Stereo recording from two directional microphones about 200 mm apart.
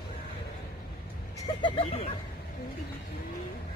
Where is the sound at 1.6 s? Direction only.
25° left (ahead or behind).